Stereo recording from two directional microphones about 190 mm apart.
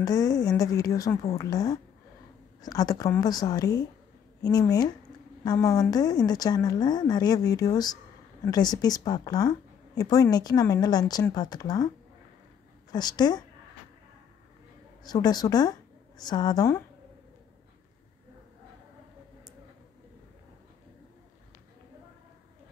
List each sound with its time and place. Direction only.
0.0 s a woman's voice: 20° left (ahead or behind)
12.9 s a woman's voice: 20° left (ahead or behind)
15.0 s a woman's voice: 20° left (ahead or behind)